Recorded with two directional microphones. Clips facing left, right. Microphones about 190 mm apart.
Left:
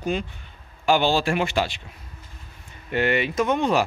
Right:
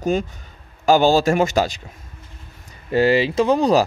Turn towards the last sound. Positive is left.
turn(degrees=-35)  # may be behind; listen again after turning